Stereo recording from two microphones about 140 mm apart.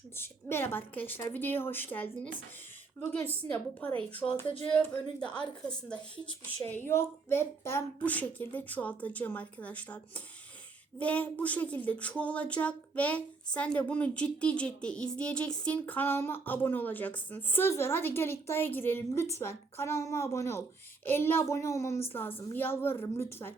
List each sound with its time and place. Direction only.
0.2 s speech: 15° left (ahead or behind)